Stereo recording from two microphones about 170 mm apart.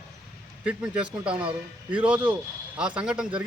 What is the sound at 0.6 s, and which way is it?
Speech, 5° right (ahead or behind).